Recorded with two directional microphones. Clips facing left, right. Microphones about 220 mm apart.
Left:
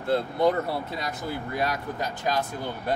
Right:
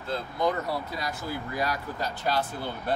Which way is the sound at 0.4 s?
30° left (ahead or behind).